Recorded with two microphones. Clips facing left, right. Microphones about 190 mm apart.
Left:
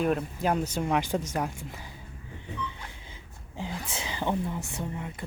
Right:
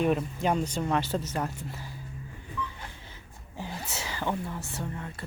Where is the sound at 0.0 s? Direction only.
Centre (ahead or behind).